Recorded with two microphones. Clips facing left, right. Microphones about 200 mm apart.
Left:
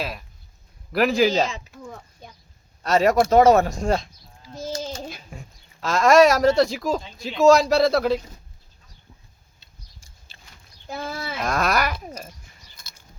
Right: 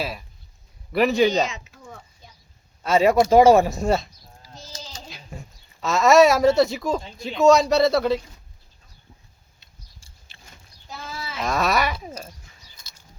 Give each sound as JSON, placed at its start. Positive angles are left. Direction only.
{"t": 0.0, "sound": "speech", "side_deg": -5}
{"t": 2.2, "sound": "a sound", "side_deg": 55}
{"t": 2.8, "sound": "speech", "side_deg": -5}
{"t": 4.6, "sound": "a sound", "side_deg": 55}
{"t": 5.8, "sound": "speech", "side_deg": 0}
{"t": 11.0, "sound": "livestock", "side_deg": 55}
{"t": 11.4, "sound": "speech", "side_deg": 0}